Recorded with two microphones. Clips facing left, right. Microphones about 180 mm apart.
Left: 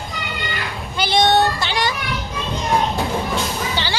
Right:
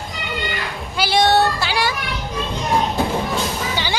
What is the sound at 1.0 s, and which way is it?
Child singing, 5° right (ahead or behind).